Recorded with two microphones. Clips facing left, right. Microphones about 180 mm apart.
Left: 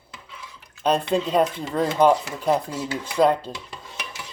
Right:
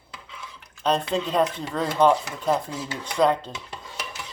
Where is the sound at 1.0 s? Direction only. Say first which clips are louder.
Left 2 dB; centre (ahead or behind).